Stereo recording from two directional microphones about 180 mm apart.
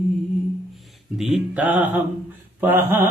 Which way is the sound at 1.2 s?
5° right (ahead or behind).